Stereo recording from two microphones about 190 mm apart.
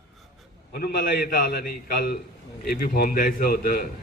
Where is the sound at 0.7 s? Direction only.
55° left (ahead or behind).